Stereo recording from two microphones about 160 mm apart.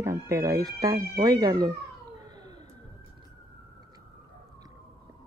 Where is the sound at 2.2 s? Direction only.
25° right (ahead or behind).